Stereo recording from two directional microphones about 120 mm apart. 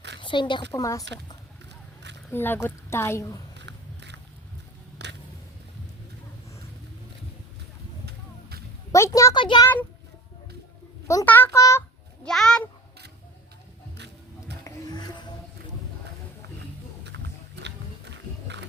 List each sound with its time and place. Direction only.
0.2 s a woman's voice: 40° left (ahead or behind)
0.7 s a woman's voice: 25° left (ahead or behind)
2.3 s a woman's voice: 15° left (ahead or behind)
8.9 s speech: 25° left (ahead or behind)
9.3 s a child's voice: 40° left (ahead or behind)
11.3 s a woman's voice: 20° left (ahead or behind)
12.2 s a child's voice: 5° left (ahead or behind)
14.6 s music: 35° left (ahead or behind)